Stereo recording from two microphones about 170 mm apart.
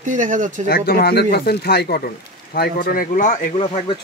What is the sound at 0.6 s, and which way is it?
Speech, 65° left (ahead or behind).